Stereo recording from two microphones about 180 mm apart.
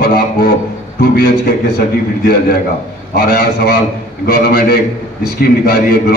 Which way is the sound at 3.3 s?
60° left (ahead or behind).